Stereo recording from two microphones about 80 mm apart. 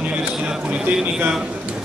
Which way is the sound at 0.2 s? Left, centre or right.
Centre.